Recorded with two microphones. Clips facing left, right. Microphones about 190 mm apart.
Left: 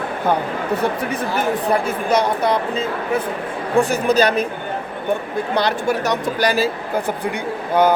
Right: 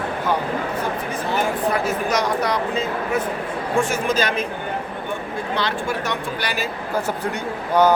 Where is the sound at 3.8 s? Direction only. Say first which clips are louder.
Left 6 dB; 35° left (ahead or behind).